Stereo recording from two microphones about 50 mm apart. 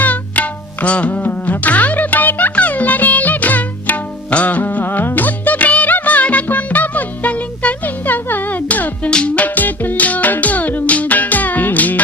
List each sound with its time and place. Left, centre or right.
0.0 s music: left
9.0 s music: left